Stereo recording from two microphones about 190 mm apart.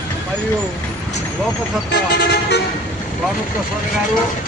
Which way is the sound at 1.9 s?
60° left (ahead or behind).